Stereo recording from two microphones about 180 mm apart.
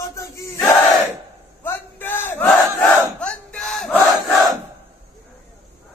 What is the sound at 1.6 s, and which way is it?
Battle cry, 10° left (ahead or behind).